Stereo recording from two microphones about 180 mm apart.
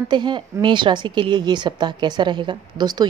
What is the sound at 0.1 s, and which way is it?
A woman's voice, 25° right (ahead or behind).